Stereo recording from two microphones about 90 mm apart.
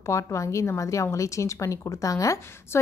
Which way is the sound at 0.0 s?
35° left (ahead or behind).